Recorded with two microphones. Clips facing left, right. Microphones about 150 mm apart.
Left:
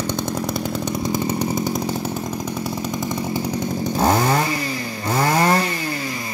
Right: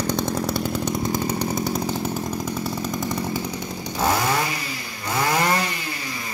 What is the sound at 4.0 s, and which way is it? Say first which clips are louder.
Chainsaw: left 3 dB; 45° left (ahead or behind).